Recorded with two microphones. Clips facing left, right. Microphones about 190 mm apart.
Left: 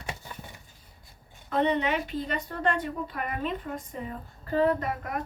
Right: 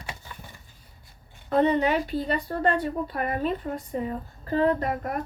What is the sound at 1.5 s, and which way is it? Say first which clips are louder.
Speech: right 4 dB; 40° right (ahead or behind).